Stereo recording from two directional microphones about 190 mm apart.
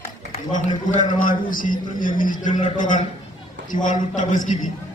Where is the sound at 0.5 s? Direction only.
40° left (ahead or behind).